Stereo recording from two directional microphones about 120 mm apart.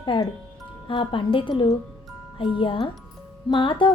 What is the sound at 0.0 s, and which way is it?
Speech, 40° left (ahead or behind).